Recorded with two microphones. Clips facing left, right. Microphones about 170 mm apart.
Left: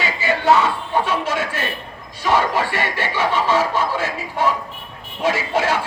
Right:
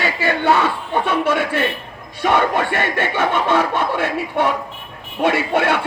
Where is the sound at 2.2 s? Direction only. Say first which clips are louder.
Right 2 dB; 60° right (ahead or behind).